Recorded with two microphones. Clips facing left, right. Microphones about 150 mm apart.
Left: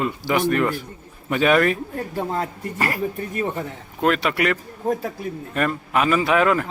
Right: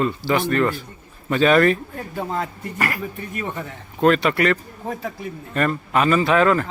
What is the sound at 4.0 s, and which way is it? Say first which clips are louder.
Speech: right 3 dB; 5° left (ahead or behind).